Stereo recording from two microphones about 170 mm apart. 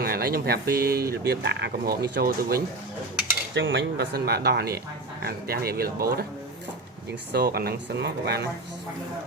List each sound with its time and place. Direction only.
0.0 s speech: 65° right (ahead or behind)
3.5 s speech: 90° right; by 6.2 s 65° right (ahead or behind)
7.3 s speech: 70° right (ahead or behind)